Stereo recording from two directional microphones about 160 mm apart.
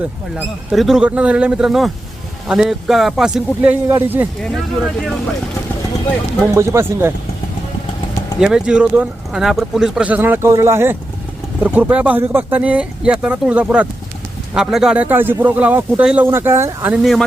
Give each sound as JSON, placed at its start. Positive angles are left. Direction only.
{"t": 0.0, "sound": "speech", "side_deg": -5}
{"t": 4.4, "sound": "speech", "side_deg": 0}
{"t": 6.6, "sound": "speech", "side_deg": -15}
{"t": 8.4, "sound": "speech", "side_deg": -5}
{"t": 17.0, "sound": "speech", "side_deg": 0}